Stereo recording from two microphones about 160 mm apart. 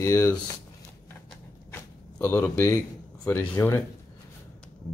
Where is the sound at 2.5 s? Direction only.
15° left (ahead or behind).